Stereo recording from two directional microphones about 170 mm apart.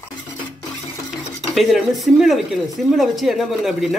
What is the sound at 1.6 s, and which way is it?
Speech, centre (ahead or behind).